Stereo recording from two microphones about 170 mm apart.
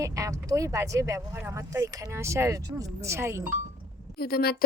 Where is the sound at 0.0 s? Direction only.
20° right (ahead or behind).